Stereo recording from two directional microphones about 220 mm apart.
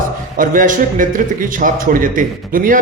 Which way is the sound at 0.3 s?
40° right (ahead or behind).